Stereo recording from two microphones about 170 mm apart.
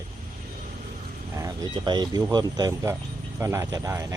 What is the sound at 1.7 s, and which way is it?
Speech, 25° right (ahead or behind).